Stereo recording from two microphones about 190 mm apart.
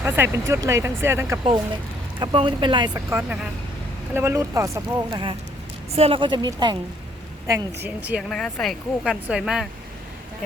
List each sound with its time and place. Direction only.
0.0 s speech: 15° right (ahead or behind)
2.1 s speech: 25° right (ahead or behind)
5.9 s speech: 30° right (ahead or behind)
7.4 s speech: 15° right (ahead or behind)
8.3 s speech: 5° left (ahead or behind)